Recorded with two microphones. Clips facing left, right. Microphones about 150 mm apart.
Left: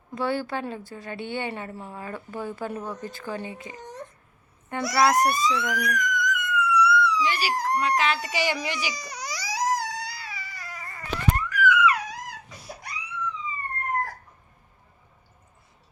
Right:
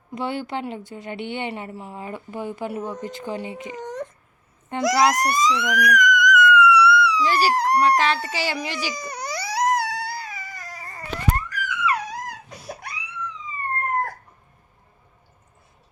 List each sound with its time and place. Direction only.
0.1 s a woman's voice: 20° right (ahead or behind)
3.8 s baby cry: 90° right
4.8 s a sound: 85° right
7.3 s speech: 35° right (ahead or behind)
7.5 s speech: 75° right (ahead or behind)
7.8 s speech: 35° right (ahead or behind)
8.9 s baby cry: 50° right (ahead or behind); by 11.0 s 35° right (ahead or behind)
11.4 s theremin: 35° right (ahead or behind)
12.5 s crying: 65° right (ahead or behind)